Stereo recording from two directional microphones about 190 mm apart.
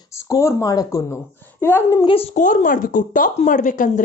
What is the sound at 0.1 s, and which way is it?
A woman's voice, 15° left (ahead or behind).